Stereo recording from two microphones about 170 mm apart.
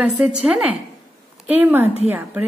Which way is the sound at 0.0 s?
5° right (ahead or behind).